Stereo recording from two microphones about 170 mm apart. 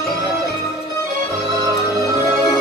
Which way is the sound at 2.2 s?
20° left (ahead or behind).